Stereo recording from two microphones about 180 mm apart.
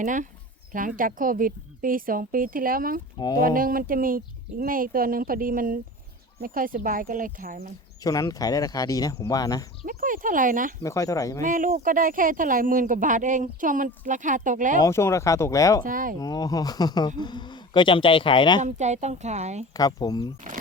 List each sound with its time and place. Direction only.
0.0 s speech: 45° right (ahead or behind)
3.2 s speech: 20° left (ahead or behind)
3.4 s speech: 50° right (ahead or behind)
8.0 s speech: 20° left (ahead or behind)
9.8 s speech: 50° right (ahead or behind)
10.8 s speech: 20° left (ahead or behind)
11.4 s speech: 50° right (ahead or behind)
14.8 s speech: 15° left (ahead or behind)
15.8 s speech: 50° right (ahead or behind)
16.2 s speech: 20° left (ahead or behind)
18.6 s speech: 40° right (ahead or behind)
19.7 s speech: 20° left (ahead or behind)